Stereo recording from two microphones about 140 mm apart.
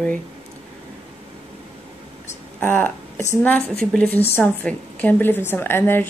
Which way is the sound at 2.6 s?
15° left (ahead or behind).